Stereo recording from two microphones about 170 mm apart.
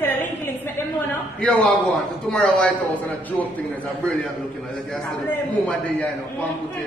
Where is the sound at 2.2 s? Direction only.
5° left (ahead or behind).